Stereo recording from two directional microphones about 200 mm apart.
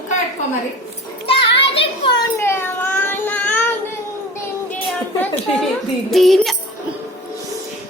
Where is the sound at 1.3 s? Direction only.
25° left (ahead or behind).